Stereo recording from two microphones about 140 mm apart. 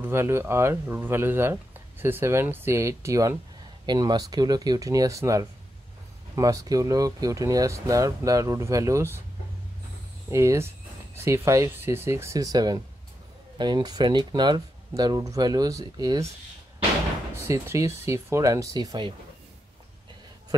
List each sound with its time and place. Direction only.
0.0 s speech: 15° right (ahead or behind)
10.3 s speech: 20° right (ahead or behind)
17.4 s speech: 20° right (ahead or behind)